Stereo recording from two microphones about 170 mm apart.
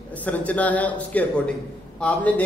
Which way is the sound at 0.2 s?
10° left (ahead or behind).